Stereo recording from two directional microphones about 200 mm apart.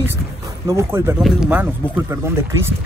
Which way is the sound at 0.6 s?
15° right (ahead or behind).